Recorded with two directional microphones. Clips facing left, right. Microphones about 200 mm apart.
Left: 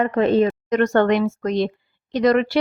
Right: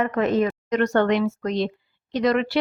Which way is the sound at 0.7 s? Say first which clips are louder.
Left 2 dB; 50° left (ahead or behind).